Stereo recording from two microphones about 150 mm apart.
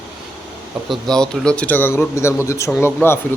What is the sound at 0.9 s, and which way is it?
Speech, 5° left (ahead or behind).